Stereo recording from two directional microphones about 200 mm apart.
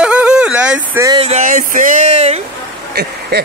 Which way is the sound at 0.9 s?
20° right (ahead or behind).